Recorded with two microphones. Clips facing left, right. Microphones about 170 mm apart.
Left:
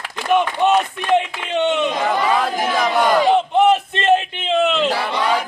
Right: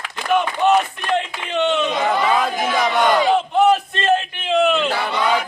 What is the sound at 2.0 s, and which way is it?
Speech, centre (ahead or behind).